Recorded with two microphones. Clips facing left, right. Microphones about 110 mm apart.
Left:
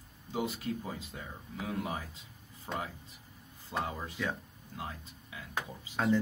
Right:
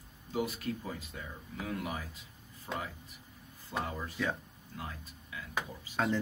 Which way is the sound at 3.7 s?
15° left (ahead or behind).